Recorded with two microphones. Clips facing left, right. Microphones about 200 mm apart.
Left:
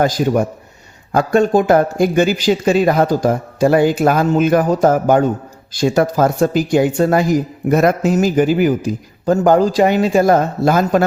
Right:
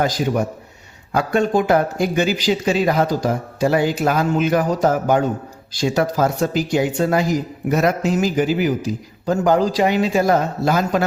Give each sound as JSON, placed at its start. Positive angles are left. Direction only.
{"t": 1.1, "sound": "speech", "side_deg": 45}